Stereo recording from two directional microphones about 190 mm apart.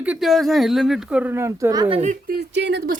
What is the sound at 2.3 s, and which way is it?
Speech, 60° right (ahead or behind).